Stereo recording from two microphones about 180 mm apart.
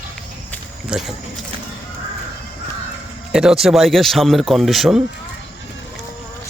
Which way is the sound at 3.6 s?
Centre (ahead or behind).